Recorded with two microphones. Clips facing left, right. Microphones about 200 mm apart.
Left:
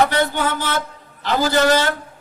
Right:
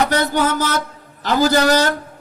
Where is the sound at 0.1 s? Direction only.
40° right (ahead or behind).